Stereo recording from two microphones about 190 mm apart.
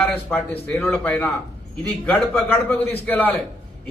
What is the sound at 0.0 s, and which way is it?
A man's voice, 10° left (ahead or behind).